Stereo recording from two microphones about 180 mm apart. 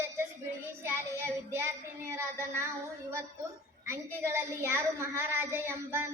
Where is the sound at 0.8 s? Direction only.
15° right (ahead or behind).